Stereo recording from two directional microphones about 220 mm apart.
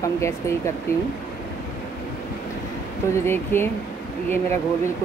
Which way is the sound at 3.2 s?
10° left (ahead or behind).